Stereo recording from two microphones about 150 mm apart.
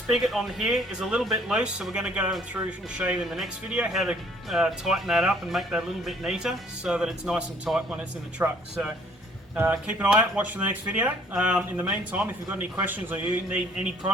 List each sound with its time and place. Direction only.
0.1 s speech: centre (ahead or behind)
9.6 s speech: 10° right (ahead or behind)